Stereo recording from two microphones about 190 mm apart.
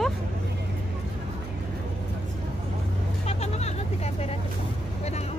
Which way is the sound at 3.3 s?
35° left (ahead or behind).